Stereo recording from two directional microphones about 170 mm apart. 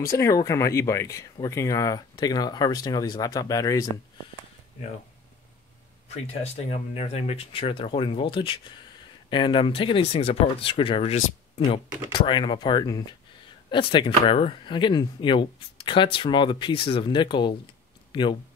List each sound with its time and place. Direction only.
0.1 s speech: 20° left (ahead or behind)
6.0 s speech: 40° left (ahead or behind)